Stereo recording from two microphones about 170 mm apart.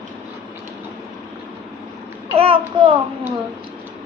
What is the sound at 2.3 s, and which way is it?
Babbling, 35° right (ahead or behind).